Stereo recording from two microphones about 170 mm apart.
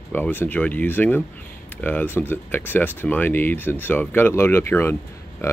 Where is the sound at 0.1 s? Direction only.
10° left (ahead or behind).